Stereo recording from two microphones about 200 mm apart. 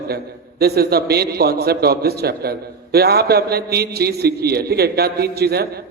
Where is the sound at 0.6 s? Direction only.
50° right (ahead or behind).